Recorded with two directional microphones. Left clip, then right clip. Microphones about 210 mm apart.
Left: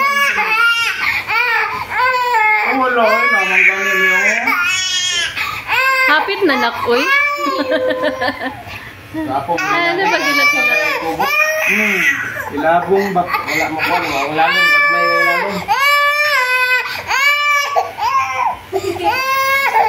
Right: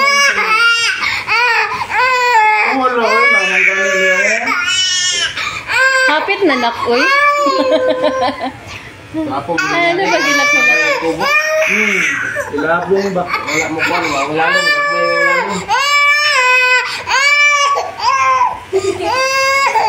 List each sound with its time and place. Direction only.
0.0 s baby cry: 15° right (ahead or behind)
3.1 s baby cry: centre (ahead or behind)
5.7 s a child's voice: 10° left (ahead or behind)
9.6 s speech: centre (ahead or behind)
12.9 s a sound: 5° left (ahead or behind)
19.0 s baby cry: 5° left (ahead or behind)